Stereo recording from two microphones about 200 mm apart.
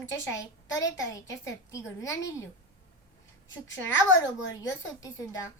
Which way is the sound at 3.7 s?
65° left (ahead or behind).